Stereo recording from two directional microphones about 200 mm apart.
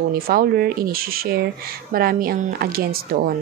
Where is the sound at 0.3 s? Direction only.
50° right (ahead or behind).